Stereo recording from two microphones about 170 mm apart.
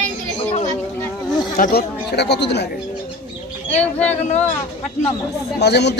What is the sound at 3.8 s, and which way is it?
Speech, 10° left (ahead or behind).